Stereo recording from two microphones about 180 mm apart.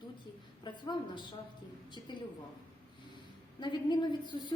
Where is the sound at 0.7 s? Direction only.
25° left (ahead or behind).